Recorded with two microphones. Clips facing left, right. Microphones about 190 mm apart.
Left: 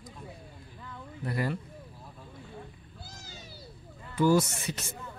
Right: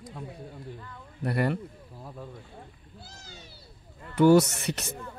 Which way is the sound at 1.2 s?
65° right (ahead or behind).